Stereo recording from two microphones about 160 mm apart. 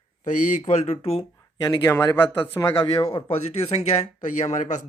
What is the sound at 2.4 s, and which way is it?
Speech, 10° left (ahead or behind).